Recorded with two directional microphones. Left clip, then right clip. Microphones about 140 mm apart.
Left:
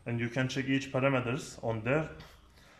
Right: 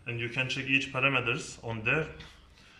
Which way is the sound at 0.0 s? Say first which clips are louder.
Right 2 dB; 45° left (ahead or behind).